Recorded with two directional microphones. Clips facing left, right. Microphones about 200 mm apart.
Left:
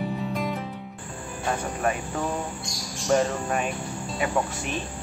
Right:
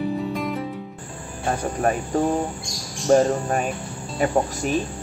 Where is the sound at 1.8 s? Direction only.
40° right (ahead or behind).